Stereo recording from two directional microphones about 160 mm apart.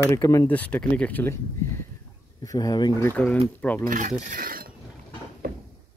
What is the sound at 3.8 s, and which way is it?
Speech, 55° right (ahead or behind).